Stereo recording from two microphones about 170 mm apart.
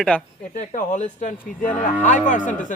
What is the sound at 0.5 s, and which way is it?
Speech, 50° left (ahead or behind).